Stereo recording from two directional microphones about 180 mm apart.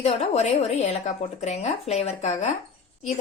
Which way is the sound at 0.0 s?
35° left (ahead or behind).